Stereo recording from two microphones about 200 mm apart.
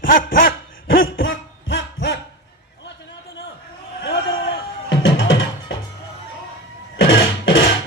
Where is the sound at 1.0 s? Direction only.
70° left (ahead or behind).